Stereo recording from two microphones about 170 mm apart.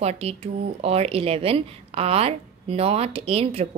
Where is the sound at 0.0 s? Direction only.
40° right (ahead or behind).